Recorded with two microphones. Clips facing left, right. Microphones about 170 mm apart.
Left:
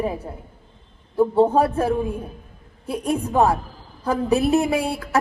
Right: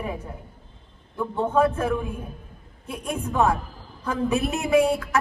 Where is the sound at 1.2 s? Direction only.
35° left (ahead or behind).